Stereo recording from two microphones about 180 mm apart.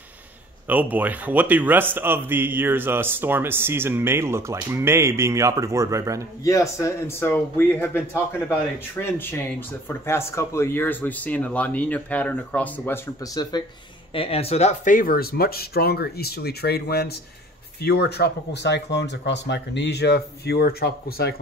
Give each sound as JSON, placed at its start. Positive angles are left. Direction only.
{"t": 0.7, "sound": "a man's voice", "side_deg": -10}
{"t": 6.4, "sound": "speech", "side_deg": 15}
{"t": 14.1, "sound": "speech", "side_deg": 30}